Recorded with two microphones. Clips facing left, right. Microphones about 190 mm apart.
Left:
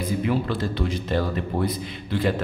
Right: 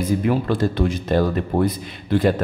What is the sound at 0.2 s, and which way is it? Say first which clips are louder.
A man's voice: right 4 dB; 45° right (ahead or behind).